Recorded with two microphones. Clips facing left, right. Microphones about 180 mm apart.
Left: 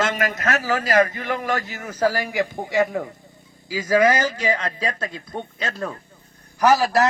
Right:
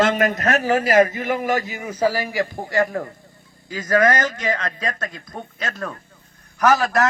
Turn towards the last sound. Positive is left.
turn(degrees=35)  # may be behind; listen again after turning